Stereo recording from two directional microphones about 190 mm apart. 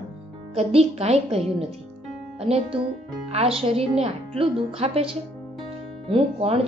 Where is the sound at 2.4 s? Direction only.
30° right (ahead or behind).